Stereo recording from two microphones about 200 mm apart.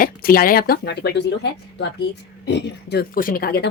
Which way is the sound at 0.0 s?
45° left (ahead or behind).